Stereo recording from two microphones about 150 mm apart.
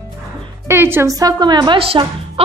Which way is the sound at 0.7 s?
15° right (ahead or behind).